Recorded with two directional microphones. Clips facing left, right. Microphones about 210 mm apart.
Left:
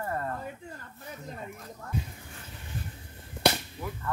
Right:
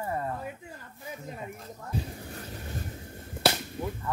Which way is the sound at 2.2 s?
40° right (ahead or behind).